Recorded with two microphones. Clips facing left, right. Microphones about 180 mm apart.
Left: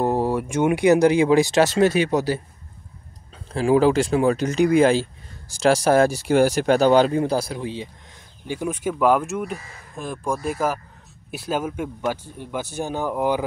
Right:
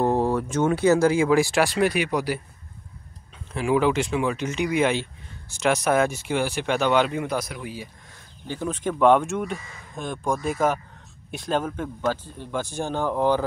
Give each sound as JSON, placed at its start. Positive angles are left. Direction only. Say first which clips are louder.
{"t": 0.0, "sound": "speech", "louder": "left 1 dB", "side_deg": 10}
{"t": 3.5, "sound": "speech", "louder": "left 4 dB", "side_deg": 35}
{"t": 8.5, "sound": "speech", "louder": "left 2 dB", "side_deg": 10}